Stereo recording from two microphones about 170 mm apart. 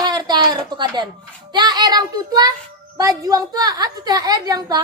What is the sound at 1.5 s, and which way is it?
A woman's voice, 25° right (ahead or behind).